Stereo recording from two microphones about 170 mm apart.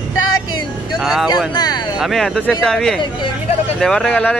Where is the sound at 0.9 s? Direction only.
Centre (ahead or behind).